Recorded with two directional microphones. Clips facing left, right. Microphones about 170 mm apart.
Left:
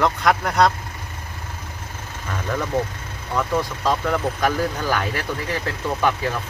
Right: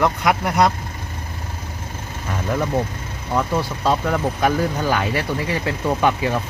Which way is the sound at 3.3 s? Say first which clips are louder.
Right 1 dB; 10° right (ahead or behind).